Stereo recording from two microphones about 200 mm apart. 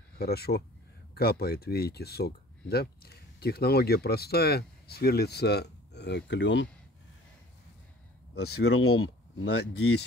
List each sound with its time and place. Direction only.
0.2 s speech: 50° left (ahead or behind)
8.6 s speech: 90° left